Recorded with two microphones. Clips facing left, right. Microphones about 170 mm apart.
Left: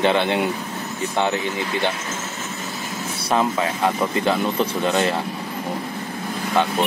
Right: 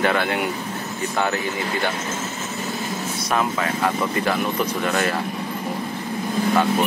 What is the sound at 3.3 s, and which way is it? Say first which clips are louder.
Speech: left 3 dB; 25° left (ahead or behind).